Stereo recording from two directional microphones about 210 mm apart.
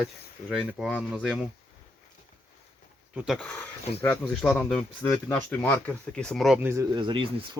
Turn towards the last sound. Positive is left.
turn(degrees=-20)  # may be behind; listen again after turning